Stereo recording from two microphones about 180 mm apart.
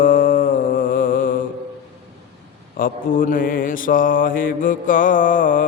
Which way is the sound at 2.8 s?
50° left (ahead or behind).